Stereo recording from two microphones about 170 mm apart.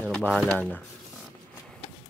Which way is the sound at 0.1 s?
5° left (ahead or behind).